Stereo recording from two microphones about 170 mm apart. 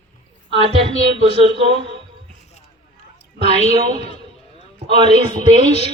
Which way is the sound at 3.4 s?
40° left (ahead or behind).